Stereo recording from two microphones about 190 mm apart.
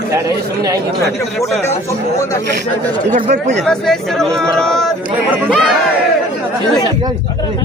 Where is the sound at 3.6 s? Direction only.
5° left (ahead or behind).